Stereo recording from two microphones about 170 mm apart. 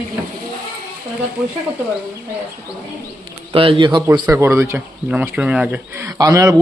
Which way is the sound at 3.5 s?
30° right (ahead or behind).